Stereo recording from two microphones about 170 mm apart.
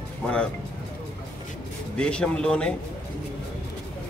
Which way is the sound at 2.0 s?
5° left (ahead or behind).